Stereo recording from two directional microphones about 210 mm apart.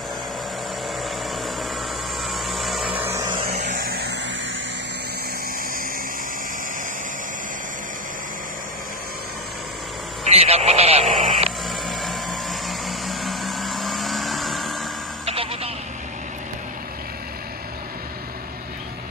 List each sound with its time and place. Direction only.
2.2 s vehicle: centre (ahead or behind)
3.3 s vehicle: 40° right (ahead or behind)
10.2 s radio: 30° right (ahead or behind)
12.0 s a sound: centre (ahead or behind)
15.2 s telephone: 25° right (ahead or behind)